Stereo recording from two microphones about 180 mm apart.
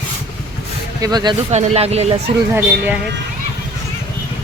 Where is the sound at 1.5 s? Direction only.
35° right (ahead or behind).